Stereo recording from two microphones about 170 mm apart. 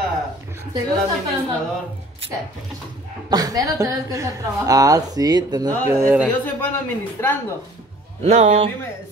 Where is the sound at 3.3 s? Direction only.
20° right (ahead or behind).